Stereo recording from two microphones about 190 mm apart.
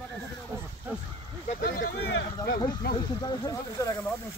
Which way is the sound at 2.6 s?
25° left (ahead or behind).